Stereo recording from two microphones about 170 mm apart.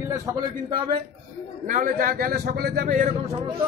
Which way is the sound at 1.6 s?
50° right (ahead or behind).